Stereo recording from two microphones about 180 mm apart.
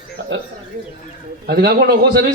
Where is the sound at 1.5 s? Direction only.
60° right (ahead or behind).